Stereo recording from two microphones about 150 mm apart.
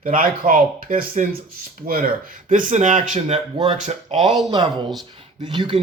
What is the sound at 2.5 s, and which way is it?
Speech, 55° right (ahead or behind).